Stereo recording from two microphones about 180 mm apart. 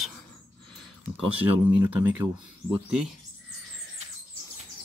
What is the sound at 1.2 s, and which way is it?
Speech, 10° right (ahead or behind).